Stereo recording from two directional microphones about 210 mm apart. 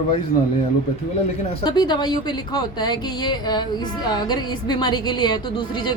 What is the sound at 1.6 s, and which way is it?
Speech, 20° left (ahead or behind).